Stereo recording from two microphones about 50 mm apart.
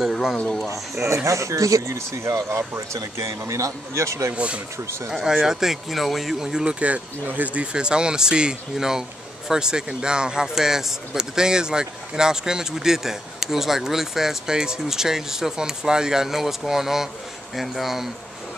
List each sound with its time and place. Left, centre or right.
0.0 s a sound: centre
1.0 s speech: right
4.3 s speech: right
4.8 s speech: right
5.4 s speech: centre
6.4 s speech: centre
7.2 s speech: right
7.7 s speech: centre